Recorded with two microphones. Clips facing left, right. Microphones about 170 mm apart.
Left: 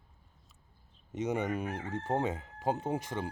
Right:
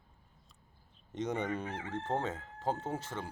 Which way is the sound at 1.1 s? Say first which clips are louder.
Left 2 dB; 10° left (ahead or behind).